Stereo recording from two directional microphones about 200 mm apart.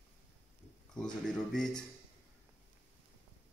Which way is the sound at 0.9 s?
5° left (ahead or behind).